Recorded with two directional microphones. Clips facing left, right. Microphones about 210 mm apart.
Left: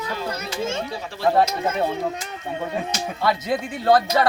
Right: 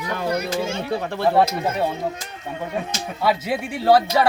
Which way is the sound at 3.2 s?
10° right (ahead or behind).